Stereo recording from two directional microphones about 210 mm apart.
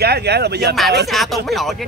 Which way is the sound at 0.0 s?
50° right (ahead or behind).